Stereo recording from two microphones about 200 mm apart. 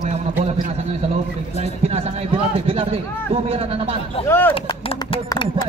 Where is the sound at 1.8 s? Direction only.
30° right (ahead or behind).